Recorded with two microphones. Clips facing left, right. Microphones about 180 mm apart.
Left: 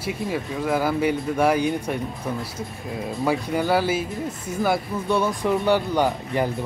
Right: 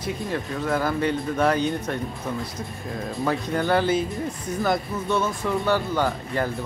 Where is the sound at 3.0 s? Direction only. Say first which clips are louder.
Left 2 dB; 10° left (ahead or behind).